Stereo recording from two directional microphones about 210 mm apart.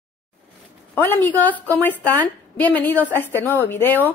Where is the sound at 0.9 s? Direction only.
10° left (ahead or behind).